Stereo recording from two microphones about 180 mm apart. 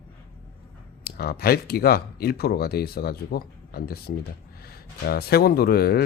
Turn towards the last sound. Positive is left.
turn(degrees=60)  # may be behind; listen again after turning